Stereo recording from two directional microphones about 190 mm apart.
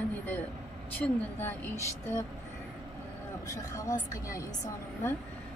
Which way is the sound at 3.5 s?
15° left (ahead or behind).